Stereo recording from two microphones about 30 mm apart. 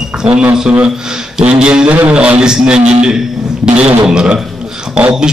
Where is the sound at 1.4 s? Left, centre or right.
Right.